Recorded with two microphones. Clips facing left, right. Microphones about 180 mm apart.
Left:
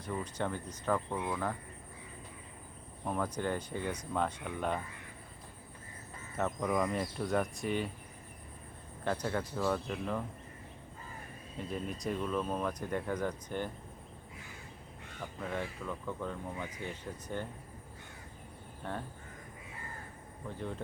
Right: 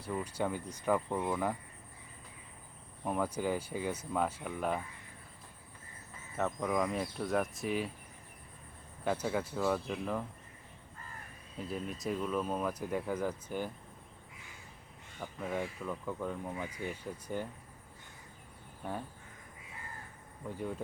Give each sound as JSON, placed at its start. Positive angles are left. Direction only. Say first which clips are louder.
{"t": 0.0, "sound": "speech", "louder": "right 1 dB", "side_deg": -10}
{"t": 3.0, "sound": "speech", "louder": "right 1 dB", "side_deg": -5}
{"t": 6.3, "sound": "speech", "louder": "even", "side_deg": 0}
{"t": 9.0, "sound": "speech", "louder": "right 1 dB", "side_deg": -5}
{"t": 11.5, "sound": "speech", "louder": "even", "side_deg": 0}
{"t": 15.2, "sound": "speech", "louder": "right 1 dB", "side_deg": -5}
{"t": 18.8, "sound": "speech", "louder": "even", "side_deg": -10}
{"t": 20.6, "sound": "speech", "louder": "right 2 dB", "side_deg": -10}